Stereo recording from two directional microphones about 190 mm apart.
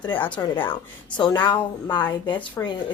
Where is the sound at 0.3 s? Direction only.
25° left (ahead or behind).